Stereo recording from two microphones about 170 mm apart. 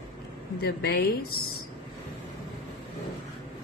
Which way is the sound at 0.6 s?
70° left (ahead or behind).